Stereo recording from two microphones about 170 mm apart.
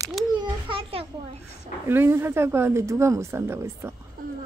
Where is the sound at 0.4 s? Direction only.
30° right (ahead or behind).